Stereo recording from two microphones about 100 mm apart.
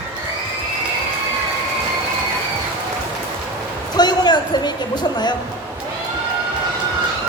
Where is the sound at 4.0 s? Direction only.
45° left (ahead or behind).